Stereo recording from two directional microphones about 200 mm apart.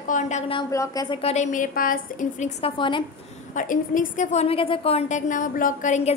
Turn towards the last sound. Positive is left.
turn(degrees=35)  # may be behind; listen again after turning